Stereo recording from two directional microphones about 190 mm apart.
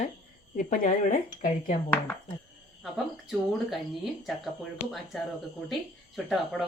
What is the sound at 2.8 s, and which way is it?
Speech, centre (ahead or behind).